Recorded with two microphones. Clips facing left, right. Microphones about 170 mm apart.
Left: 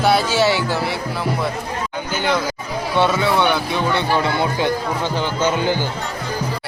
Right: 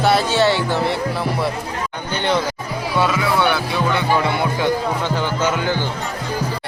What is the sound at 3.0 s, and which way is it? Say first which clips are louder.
Speech: left 2 dB; 25° left (ahead or behind).